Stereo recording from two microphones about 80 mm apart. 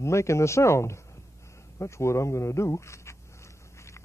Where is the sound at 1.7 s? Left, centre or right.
Left.